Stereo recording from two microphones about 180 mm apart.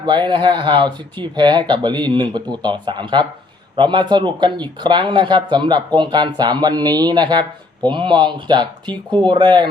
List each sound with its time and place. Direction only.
0.0 s speech: 25° right (ahead or behind)